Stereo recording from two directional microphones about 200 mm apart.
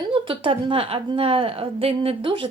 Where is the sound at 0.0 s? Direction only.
25° right (ahead or behind).